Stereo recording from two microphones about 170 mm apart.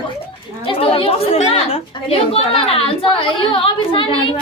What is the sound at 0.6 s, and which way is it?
A woman's voice, 30° left (ahead or behind).